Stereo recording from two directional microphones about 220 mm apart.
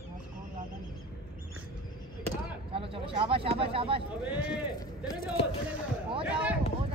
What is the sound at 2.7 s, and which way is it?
Speech, 25° right (ahead or behind).